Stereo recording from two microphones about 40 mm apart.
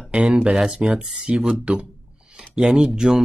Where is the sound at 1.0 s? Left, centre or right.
Centre.